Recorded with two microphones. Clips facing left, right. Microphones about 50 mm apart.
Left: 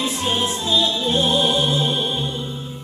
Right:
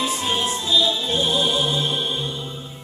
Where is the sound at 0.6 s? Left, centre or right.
Left.